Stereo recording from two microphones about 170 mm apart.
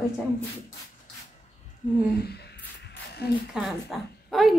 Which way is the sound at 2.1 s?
70° left (ahead or behind).